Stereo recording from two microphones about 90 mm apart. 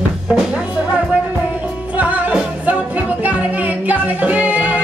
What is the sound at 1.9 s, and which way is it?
Music, 20° right (ahead or behind).